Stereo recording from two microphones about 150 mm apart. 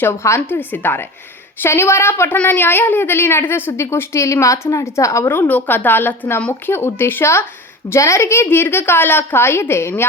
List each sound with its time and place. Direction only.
0.0 s a woman's voice: 20° left (ahead or behind)